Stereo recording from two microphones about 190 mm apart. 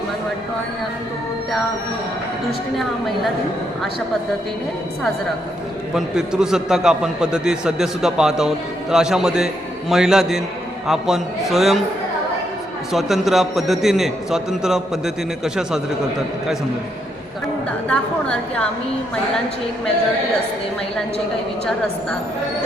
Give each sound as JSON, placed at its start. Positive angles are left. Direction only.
{"t": 5.9, "sound": "a man's voice", "side_deg": -5}
{"t": 12.9, "sound": "a man's voice", "side_deg": 0}
{"t": 17.8, "sound": "a woman's voice", "side_deg": 5}